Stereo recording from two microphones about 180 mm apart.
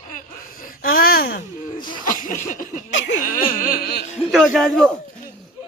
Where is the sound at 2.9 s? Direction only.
85° left.